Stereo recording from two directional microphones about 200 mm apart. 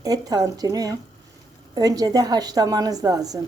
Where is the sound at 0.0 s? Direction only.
20° right (ahead or behind).